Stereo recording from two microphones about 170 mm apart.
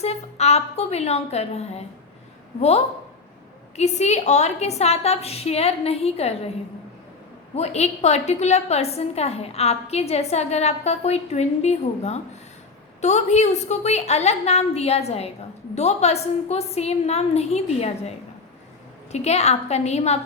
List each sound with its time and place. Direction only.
0.0 s a woman's voice: 40° left (ahead or behind)
7.5 s a woman's voice: 40° left (ahead or behind)
19.1 s a woman's voice: 40° left (ahead or behind)